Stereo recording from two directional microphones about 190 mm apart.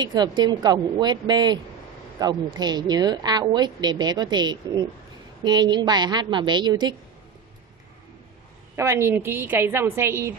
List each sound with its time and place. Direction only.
0.0 s a woman's voice: 20° right (ahead or behind)
8.7 s a woman's voice: 15° right (ahead or behind)